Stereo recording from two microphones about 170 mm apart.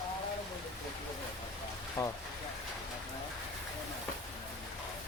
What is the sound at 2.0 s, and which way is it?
Speech, 20° left (ahead or behind).